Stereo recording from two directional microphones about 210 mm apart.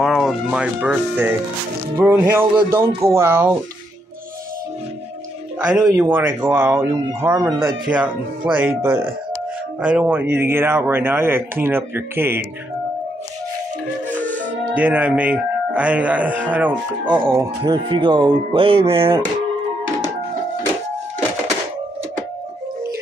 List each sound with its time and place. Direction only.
0.0 s speech: centre (ahead or behind)
5.7 s speech: 15° right (ahead or behind)
14.1 s music: 5° left (ahead or behind)
14.8 s speech: 5° right (ahead or behind)
17.4 s speech: 20° right (ahead or behind)